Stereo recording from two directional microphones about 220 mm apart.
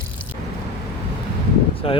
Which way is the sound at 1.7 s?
25° left (ahead or behind).